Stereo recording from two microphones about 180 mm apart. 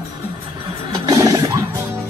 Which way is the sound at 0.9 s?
20° right (ahead or behind).